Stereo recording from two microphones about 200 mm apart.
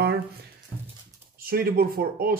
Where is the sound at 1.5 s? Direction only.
50° right (ahead or behind).